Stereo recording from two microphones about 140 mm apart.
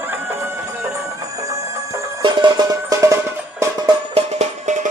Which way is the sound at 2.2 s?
35° right (ahead or behind).